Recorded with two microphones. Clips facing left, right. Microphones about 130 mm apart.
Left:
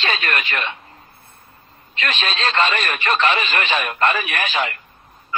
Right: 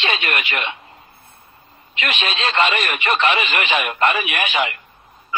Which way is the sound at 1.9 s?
30° left (ahead or behind).